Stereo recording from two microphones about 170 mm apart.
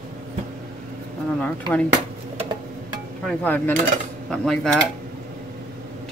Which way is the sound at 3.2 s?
10° left (ahead or behind).